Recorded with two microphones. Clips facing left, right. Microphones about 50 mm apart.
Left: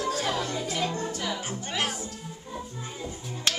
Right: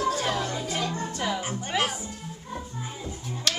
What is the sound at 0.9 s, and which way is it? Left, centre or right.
Music, right.